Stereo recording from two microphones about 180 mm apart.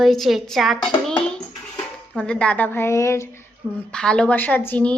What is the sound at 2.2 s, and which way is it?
Speech, 5° left (ahead or behind).